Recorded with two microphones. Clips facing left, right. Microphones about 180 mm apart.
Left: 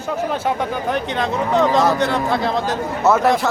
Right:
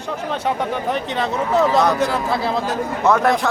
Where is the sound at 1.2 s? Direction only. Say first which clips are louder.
Even; 5° right (ahead or behind).